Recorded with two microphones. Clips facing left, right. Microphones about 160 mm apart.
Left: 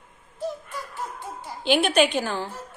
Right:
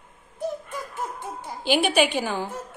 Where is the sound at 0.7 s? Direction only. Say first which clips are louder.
Right 2 dB; 15° right (ahead or behind).